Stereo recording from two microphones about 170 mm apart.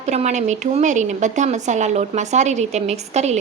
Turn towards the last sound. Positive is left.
turn(degrees=-40)  # may be behind; listen again after turning